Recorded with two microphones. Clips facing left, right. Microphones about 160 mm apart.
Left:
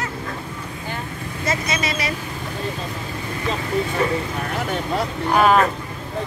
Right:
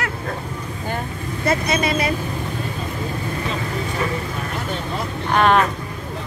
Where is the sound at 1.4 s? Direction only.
55° right (ahead or behind).